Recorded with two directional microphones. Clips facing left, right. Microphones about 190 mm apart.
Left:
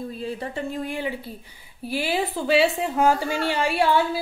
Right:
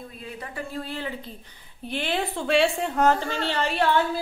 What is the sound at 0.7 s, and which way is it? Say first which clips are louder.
A woman's voice: left 4 dB; 15° left (ahead or behind).